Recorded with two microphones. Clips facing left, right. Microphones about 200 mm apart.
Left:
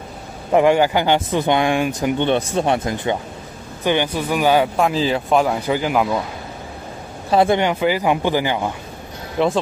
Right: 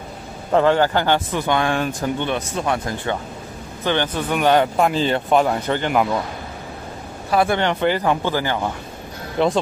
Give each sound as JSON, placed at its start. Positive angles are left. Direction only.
{"t": 0.5, "sound": "speech", "side_deg": 15}
{"t": 3.8, "sound": "speech", "side_deg": 15}
{"t": 7.2, "sound": "speech", "side_deg": 20}
{"t": 7.6, "sound": "speech", "side_deg": 10}
{"t": 9.4, "sound": "speech", "side_deg": 0}